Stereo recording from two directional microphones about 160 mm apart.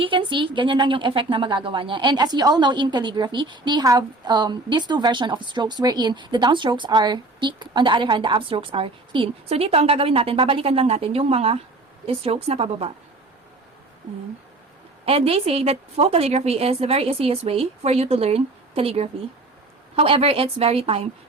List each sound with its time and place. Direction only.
0.0 s a woman's voice: 30° right (ahead or behind)
15.0 s a woman's voice: 35° right (ahead or behind)